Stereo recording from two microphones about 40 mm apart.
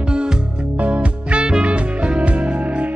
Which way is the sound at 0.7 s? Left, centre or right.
Right.